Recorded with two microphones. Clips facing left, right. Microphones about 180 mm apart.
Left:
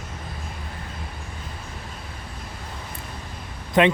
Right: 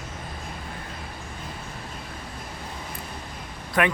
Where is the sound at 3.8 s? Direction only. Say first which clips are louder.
Left 5 dB; 20° left (ahead or behind).